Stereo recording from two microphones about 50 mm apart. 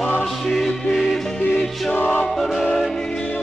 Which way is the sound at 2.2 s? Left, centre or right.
Centre.